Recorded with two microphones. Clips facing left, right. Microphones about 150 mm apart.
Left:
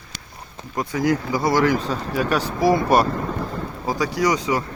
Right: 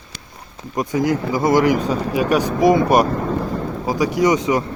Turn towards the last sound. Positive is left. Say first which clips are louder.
# right 4 dB
turn(degrees=-20)  # may be behind; listen again after turning